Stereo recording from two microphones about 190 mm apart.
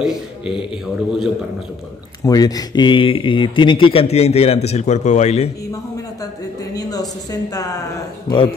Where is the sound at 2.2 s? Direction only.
20° left (ahead or behind); by 5.5 s 35° left (ahead or behind).